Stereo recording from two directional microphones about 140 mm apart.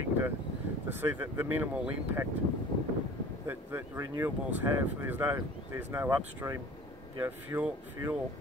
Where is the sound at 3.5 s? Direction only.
15° right (ahead or behind).